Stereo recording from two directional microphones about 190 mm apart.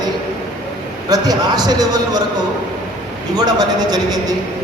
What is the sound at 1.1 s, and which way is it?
Speech, 20° right (ahead or behind).